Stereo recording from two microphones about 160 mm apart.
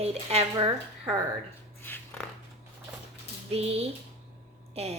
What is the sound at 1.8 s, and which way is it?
Dog, 10° left (ahead or behind).